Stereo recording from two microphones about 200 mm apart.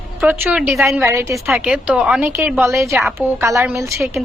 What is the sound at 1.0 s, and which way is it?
Speech, 15° right (ahead or behind).